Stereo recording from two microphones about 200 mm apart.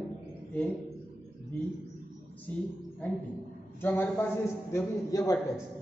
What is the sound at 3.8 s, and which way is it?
A man's voice, 10° left (ahead or behind).